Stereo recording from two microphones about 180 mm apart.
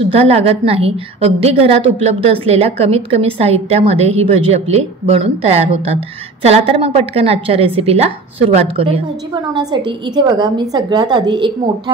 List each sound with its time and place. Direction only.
0.1 s a woman's voice: 35° right (ahead or behind)